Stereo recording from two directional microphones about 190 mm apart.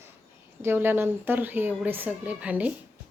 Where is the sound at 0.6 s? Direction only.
10° right (ahead or behind).